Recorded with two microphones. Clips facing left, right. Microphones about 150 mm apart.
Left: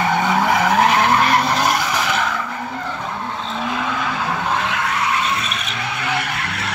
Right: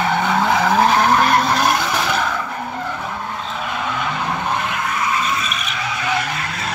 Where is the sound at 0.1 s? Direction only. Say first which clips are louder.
Even; 15° left (ahead or behind).